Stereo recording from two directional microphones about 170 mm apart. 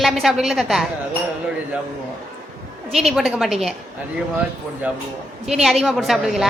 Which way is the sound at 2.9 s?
Centre (ahead or behind).